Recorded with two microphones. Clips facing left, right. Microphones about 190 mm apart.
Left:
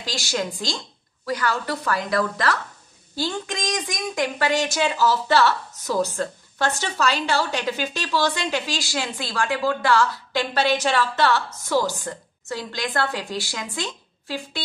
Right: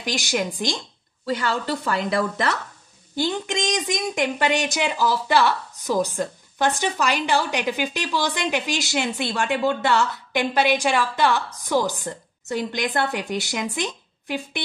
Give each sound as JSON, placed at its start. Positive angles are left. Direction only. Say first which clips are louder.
{"t": 0.0, "sound": "a woman's voice", "louder": "right 2 dB", "side_deg": -20}